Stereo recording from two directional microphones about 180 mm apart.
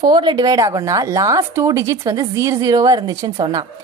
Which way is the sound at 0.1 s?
25° right (ahead or behind).